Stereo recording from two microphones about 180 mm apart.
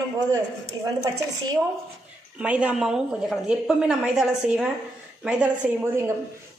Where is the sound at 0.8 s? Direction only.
20° right (ahead or behind).